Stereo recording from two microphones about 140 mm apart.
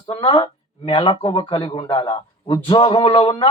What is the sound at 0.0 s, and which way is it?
Speech, 35° left (ahead or behind).